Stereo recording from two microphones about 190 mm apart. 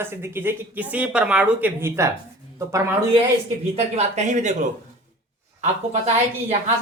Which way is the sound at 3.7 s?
35° right (ahead or behind).